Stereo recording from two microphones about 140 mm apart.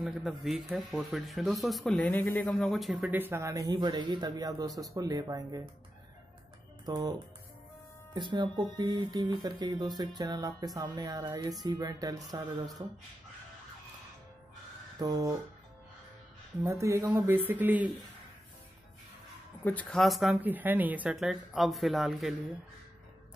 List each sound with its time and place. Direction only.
0.0 s speech: centre (ahead or behind)
2.4 s speech: centre (ahead or behind); by 5.6 s 25° right (ahead or behind)
6.9 s speech: 25° right (ahead or behind)
15.0 s speech: 25° right (ahead or behind)
16.6 s speech: 20° right (ahead or behind)
19.6 s speech: 10° left (ahead or behind)
20.0 s speech: centre (ahead or behind)
20.4 s speech: 10° right (ahead or behind)